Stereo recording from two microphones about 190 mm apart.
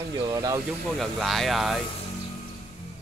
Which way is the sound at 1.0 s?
Centre (ahead or behind).